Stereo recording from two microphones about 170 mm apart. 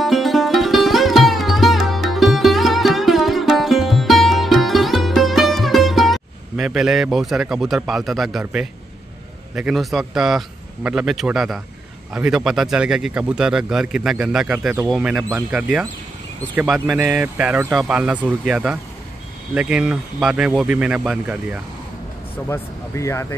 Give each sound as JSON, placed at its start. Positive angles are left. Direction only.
{"t": 0.0, "sound": "sitar", "side_deg": 0}
{"t": 9.6, "sound": "speech", "side_deg": 0}
{"t": 22.5, "sound": "speech", "side_deg": 15}